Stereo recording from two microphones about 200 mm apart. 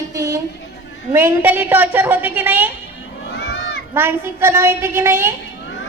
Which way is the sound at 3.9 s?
10° right (ahead or behind).